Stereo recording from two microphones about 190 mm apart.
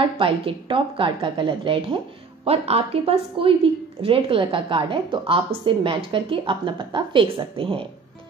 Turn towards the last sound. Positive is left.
turn(degrees=-30)  # may be behind; listen again after turning